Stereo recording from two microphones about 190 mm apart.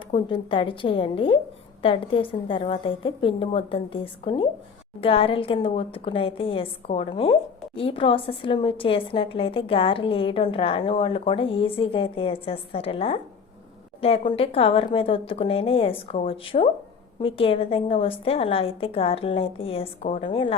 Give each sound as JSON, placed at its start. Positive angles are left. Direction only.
{"t": 0.1, "sound": "a woman's voice", "side_deg": 25}